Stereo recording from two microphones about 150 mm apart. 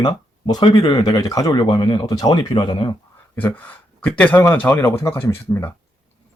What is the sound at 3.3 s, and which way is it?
Speech, 10° left (ahead or behind).